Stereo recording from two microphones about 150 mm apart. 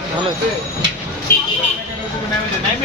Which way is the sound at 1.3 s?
15° left (ahead or behind).